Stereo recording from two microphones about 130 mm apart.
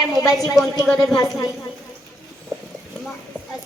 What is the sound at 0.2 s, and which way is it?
Speech, 25° left (ahead or behind).